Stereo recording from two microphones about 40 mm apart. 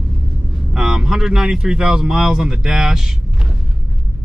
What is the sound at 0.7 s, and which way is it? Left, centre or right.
Speech, centre.